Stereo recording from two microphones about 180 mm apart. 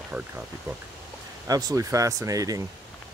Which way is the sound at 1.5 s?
20° right (ahead or behind).